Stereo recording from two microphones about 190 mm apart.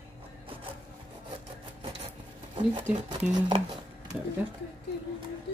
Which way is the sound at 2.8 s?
20° right (ahead or behind).